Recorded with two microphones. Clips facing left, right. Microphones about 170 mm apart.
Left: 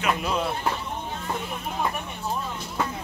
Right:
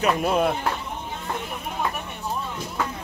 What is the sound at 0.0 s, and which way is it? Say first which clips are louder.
Speech: right 5 dB; 50° right (ahead or behind).